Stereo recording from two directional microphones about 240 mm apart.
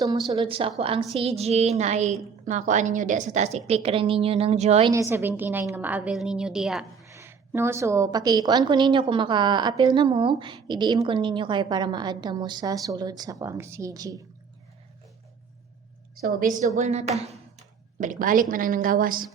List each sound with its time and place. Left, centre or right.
0.0 s a woman's voice: centre
4.9 s a woman's voice: centre
16.2 s a woman's voice: right